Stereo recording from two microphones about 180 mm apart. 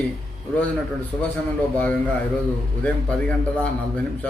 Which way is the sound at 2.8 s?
5° left (ahead or behind).